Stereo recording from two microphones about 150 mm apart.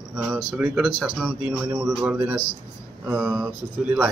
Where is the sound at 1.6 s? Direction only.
10° right (ahead or behind).